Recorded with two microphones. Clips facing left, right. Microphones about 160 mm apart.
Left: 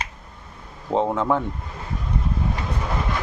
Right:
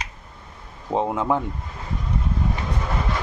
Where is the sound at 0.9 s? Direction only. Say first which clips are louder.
Left 1 dB; 10° right (ahead or behind).